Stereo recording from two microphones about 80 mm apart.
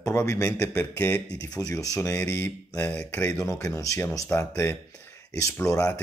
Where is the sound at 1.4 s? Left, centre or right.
Left.